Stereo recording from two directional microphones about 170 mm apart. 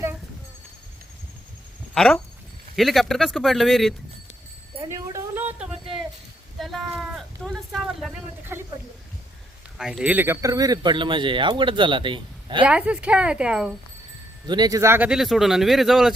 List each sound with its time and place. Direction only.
2.0 s speech: 5° left (ahead or behind)
4.9 s music: 15° right (ahead or behind)
6.6 s a sound: centre (ahead or behind)
8.5 s speech: 15° right (ahead or behind)
9.7 s speech: 5° right (ahead or behind); by 12.6 s 30° right (ahead or behind)
12.6 s speech: 5° right (ahead or behind)
14.4 s speech: 25° right (ahead or behind); by 16.1 s centre (ahead or behind)